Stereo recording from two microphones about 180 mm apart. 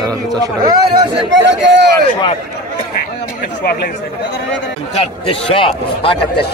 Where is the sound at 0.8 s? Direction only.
75° right (ahead or behind).